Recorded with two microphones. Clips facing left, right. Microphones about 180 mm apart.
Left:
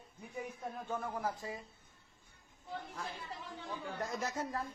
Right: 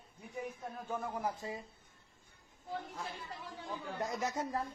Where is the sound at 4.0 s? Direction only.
20° right (ahead or behind).